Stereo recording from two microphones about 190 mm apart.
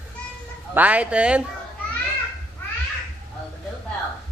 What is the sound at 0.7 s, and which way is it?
Speech, 10° right (ahead or behind).